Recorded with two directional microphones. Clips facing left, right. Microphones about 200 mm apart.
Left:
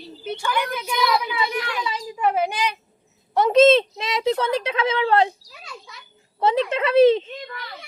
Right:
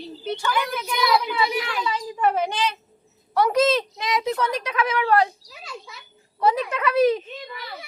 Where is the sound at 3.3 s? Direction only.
25° left (ahead or behind).